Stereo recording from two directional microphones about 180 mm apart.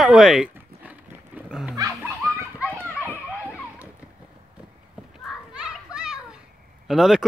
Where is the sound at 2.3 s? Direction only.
10° right (ahead or behind).